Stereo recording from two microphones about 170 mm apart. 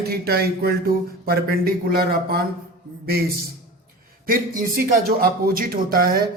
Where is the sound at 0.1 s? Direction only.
65° right (ahead or behind).